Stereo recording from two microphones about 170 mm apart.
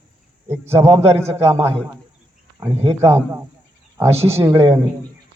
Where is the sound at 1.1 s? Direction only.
15° right (ahead or behind).